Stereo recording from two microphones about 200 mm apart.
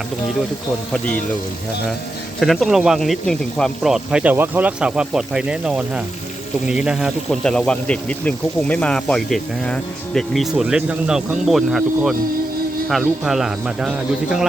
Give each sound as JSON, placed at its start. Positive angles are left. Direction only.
{"t": 2.4, "sound": "speech", "side_deg": 0}